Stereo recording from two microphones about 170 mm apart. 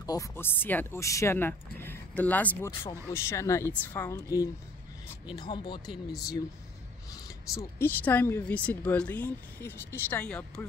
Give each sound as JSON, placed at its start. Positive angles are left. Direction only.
{"t": 0.0, "sound": "speech", "side_deg": 20}